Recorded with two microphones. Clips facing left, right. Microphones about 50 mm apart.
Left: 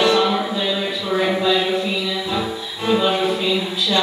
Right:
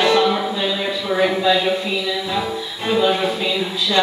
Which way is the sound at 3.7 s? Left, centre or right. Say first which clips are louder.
Even; right.